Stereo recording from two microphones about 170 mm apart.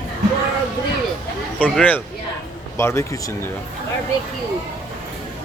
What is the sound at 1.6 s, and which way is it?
Speech, 10° left (ahead or behind).